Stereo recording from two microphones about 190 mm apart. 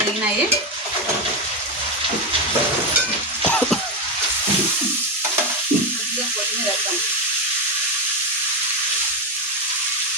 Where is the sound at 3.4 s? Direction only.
5° left (ahead or behind).